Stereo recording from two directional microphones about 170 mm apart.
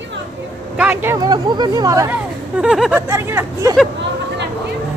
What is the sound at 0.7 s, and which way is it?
Speech, 10° right (ahead or behind).